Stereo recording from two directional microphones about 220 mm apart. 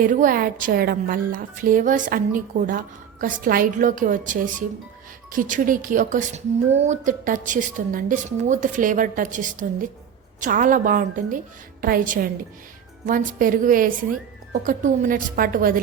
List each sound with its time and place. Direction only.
0.0 s a woman's voice: 40° right (ahead or behind)